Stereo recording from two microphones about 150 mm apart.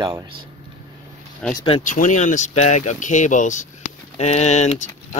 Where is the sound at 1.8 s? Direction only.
55° left (ahead or behind).